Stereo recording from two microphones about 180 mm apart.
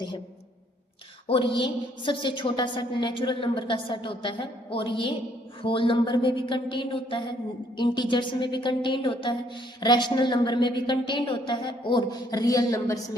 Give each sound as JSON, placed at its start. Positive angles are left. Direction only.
{"t": 1.3, "sound": "a woman's voice", "side_deg": 30}